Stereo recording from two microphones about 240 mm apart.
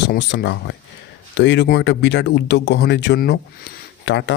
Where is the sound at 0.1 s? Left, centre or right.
Left.